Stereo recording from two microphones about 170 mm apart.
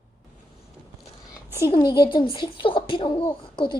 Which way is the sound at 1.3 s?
15° right (ahead or behind).